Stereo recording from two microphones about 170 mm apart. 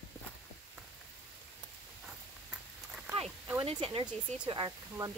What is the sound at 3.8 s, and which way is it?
Speech, 30° right (ahead or behind).